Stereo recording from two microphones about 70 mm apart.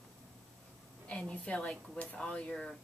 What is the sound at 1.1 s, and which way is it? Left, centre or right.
Speech, centre.